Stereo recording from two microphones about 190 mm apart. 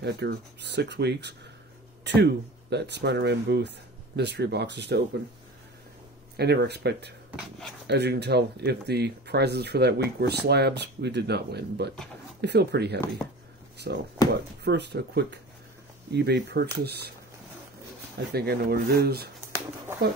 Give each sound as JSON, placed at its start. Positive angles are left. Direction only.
{"t": 0.0, "sound": "speech", "side_deg": -65}
{"t": 6.3, "sound": "speech", "side_deg": -60}
{"t": 7.2, "sound": "speech", "side_deg": 0}
{"t": 7.8, "sound": "speech", "side_deg": -60}
{"t": 18.3, "sound": "speech", "side_deg": -55}